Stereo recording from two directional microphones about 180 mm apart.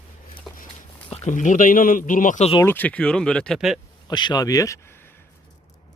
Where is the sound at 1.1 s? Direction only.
40° left (ahead or behind).